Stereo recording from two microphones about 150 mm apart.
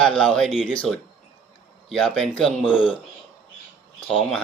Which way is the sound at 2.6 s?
35° left (ahead or behind).